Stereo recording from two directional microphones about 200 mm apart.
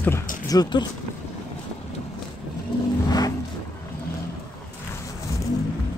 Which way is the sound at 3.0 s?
20° left (ahead or behind).